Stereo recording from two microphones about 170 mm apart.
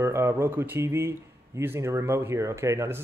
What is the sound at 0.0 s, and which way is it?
Speech, 15° right (ahead or behind).